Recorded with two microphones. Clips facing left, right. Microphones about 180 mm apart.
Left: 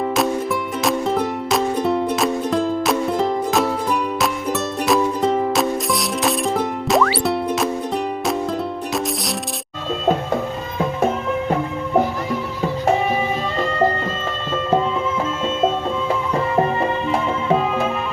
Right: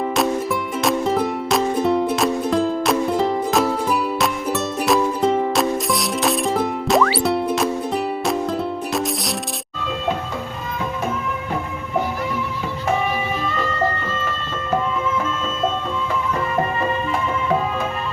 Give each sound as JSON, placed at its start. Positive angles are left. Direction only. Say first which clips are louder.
{"t": 0.9, "sound": "music", "louder": "right 1 dB", "side_deg": 0}
{"t": 13.6, "sound": "music", "louder": "left 6 dB", "side_deg": 30}
{"t": 16.6, "sound": "music", "louder": "left 3 dB", "side_deg": 25}